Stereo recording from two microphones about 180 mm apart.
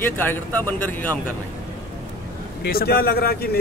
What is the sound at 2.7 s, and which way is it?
Speech, 60° left (ahead or behind).